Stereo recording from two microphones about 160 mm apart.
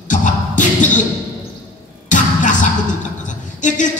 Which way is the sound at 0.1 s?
50° left (ahead or behind).